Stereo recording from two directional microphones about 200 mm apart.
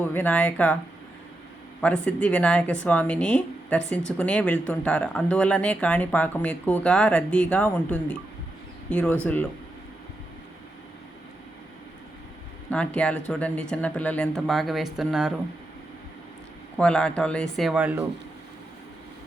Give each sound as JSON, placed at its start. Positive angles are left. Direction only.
{"t": 0.0, "sound": "speech", "side_deg": 10}
{"t": 1.8, "sound": "speech", "side_deg": 5}
{"t": 12.7, "sound": "speech", "side_deg": 5}
{"t": 16.7, "sound": "speech", "side_deg": 5}